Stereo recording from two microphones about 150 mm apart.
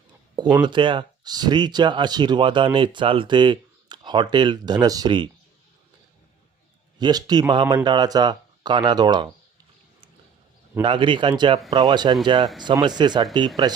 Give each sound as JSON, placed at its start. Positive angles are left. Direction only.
{"t": 0.6, "sound": "speech", "side_deg": -30}
{"t": 7.0, "sound": "speech", "side_deg": -25}
{"t": 10.8, "sound": "speech", "side_deg": -35}